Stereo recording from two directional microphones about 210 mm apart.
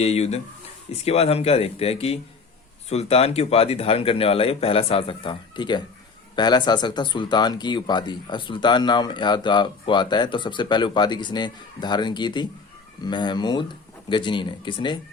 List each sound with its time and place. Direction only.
0.0 s speech: 30° left (ahead or behind)